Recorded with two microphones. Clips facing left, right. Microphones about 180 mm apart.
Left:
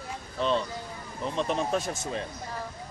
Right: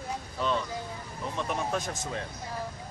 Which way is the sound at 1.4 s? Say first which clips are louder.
Left 3 dB; 20° left (ahead or behind).